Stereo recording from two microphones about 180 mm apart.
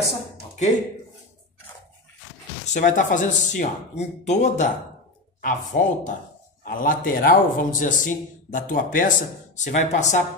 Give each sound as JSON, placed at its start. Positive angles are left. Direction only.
{"t": 2.7, "sound": "a man's voice", "side_deg": 45}